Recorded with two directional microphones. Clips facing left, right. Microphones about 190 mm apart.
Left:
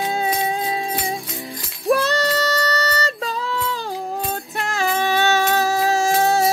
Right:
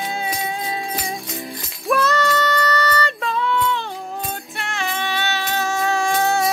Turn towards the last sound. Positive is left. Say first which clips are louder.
# left 2 dB
turn(degrees=30)  # may be behind; listen again after turning